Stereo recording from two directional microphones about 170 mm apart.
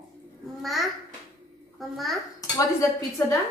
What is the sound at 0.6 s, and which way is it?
A child's voice, centre (ahead or behind).